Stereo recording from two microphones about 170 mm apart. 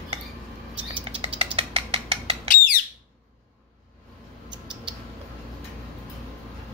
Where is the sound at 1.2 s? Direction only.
35° right (ahead or behind).